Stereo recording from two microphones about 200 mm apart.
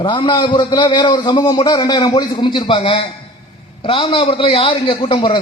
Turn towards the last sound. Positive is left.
turn(degrees=25)  # may be behind; listen again after turning